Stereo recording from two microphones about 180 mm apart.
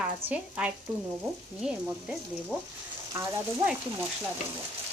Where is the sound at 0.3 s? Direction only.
10° right (ahead or behind).